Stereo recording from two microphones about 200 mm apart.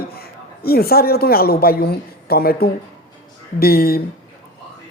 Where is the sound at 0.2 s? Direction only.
50° left (ahead or behind).